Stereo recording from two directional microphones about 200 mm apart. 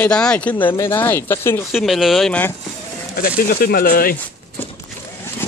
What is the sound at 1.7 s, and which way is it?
Speech, centre (ahead or behind).